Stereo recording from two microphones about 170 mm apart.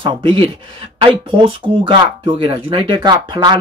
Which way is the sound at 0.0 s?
30° right (ahead or behind).